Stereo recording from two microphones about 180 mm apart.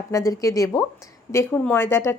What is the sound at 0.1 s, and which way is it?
Speech, 20° left (ahead or behind).